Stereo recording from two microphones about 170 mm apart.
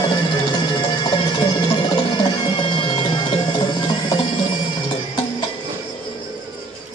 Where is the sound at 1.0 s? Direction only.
25° left (ahead or behind).